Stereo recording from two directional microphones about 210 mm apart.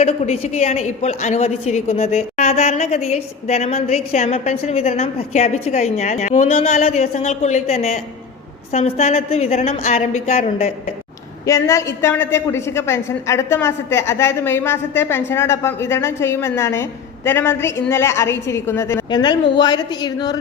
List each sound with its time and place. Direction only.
0.0 s a woman's voice: 30° left (ahead or behind)
11.4 s a woman's voice: 15° left (ahead or behind)